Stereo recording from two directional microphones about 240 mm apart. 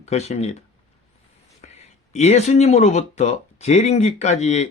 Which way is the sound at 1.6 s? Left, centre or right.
Left.